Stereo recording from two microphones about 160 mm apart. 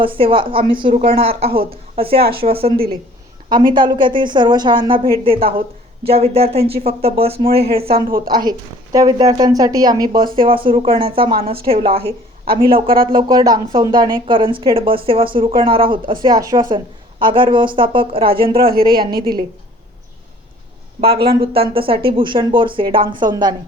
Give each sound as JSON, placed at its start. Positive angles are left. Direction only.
{"t": 0.0, "sound": "a woman's voice", "side_deg": -35}
{"t": 7.9, "sound": "a woman's voice", "side_deg": -65}
{"t": 8.3, "sound": "a woman's voice", "side_deg": -25}
{"t": 16.2, "sound": "speech", "side_deg": -25}
{"t": 18.6, "sound": "a woman's voice", "side_deg": -70}
{"t": 21.0, "sound": "speech", "side_deg": -80}
{"t": 21.7, "sound": "speech", "side_deg": -35}